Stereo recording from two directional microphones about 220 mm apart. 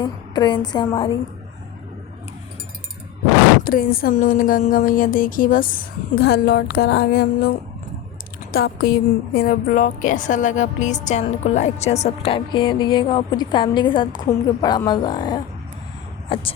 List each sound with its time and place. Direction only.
0.0 s a woman's voice: 20° left (ahead or behind)
3.6 s a woman's voice: 40° left (ahead or behind)
8.5 s a woman's voice: 45° left (ahead or behind); by 16.4 s 25° left (ahead or behind)